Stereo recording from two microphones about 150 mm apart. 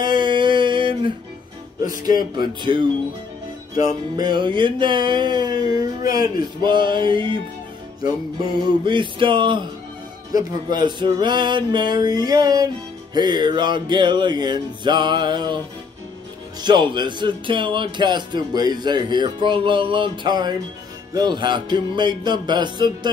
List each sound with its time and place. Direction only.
0.0 s a sound: 30° right (ahead or behind)
1.8 s music: 25° right (ahead or behind)
2.3 s speech: 30° right (ahead or behind)
3.7 s music: 25° right (ahead or behind)
6.2 s speech: 30° right (ahead or behind)
8.8 s speech: 30° right (ahead or behind)
10.8 s music: 30° right (ahead or behind)
13.1 s speech: 30° right (ahead or behind)
16.6 s speech: 30° right (ahead or behind)